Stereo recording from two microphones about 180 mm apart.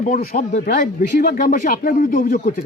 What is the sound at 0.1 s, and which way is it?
Speech, 45° left (ahead or behind).